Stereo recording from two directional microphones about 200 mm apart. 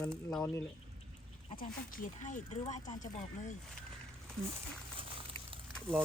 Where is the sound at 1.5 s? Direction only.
45° left (ahead or behind).